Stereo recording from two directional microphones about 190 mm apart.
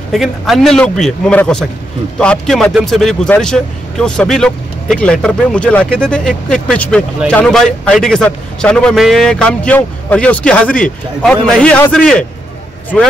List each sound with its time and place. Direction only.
0.1 s speech: centre (ahead or behind)